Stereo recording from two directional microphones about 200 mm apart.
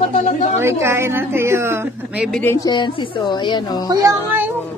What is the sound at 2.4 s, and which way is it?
A woman's voice, 15° left (ahead or behind).